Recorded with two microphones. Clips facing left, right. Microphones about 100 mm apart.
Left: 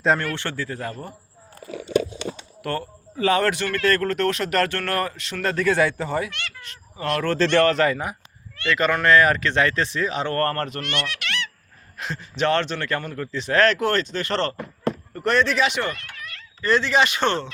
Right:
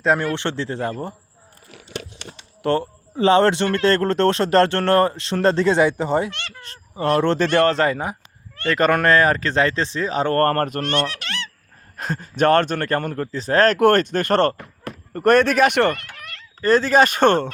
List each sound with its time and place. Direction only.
0.2 s speech: 20° right (ahead or behind)
2.6 s speech: 25° right (ahead or behind)
8.5 s speech: 45° right (ahead or behind)
11.9 s a man's voice: 45° right (ahead or behind)
13.7 s a man's voice: 50° right (ahead or behind)